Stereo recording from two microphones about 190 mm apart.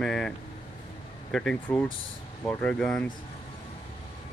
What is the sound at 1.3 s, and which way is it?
Speech, 5° left (ahead or behind).